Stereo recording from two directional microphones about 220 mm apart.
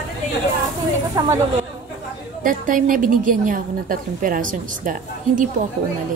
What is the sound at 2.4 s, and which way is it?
A woman's voice, 40° right (ahead or behind).